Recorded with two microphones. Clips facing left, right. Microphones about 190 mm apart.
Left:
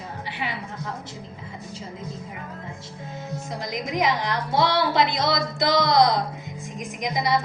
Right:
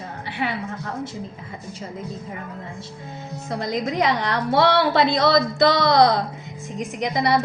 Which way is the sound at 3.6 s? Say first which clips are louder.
Right 4 dB; 60° right (ahead or behind).